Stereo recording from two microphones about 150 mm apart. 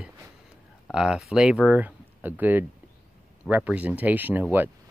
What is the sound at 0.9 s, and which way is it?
Speech, 5° right (ahead or behind).